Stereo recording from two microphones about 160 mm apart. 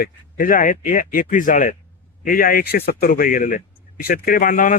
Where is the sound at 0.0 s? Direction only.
60° left (ahead or behind).